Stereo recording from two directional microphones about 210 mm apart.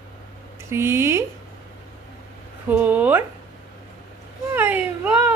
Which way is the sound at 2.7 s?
5° right (ahead or behind).